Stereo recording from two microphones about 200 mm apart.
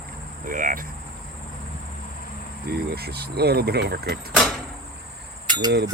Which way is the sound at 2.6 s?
55° right (ahead or behind).